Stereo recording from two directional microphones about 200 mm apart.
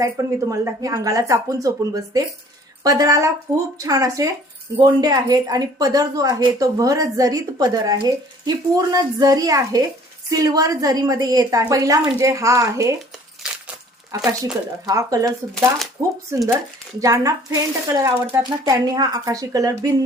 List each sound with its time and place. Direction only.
0.0 s a woman's voice: 15° right (ahead or behind)
14.1 s a woman's voice: 15° right (ahead or behind)
17.0 s a woman's voice: 15° right (ahead or behind)